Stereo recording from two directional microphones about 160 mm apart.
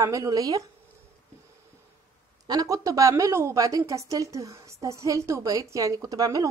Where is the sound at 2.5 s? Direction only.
20° right (ahead or behind).